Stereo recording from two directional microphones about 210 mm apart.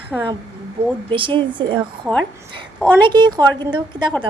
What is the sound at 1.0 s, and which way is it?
Speech, 25° right (ahead or behind).